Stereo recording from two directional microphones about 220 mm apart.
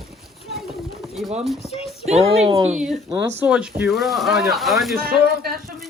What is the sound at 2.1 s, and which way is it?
Speech, 30° right (ahead or behind).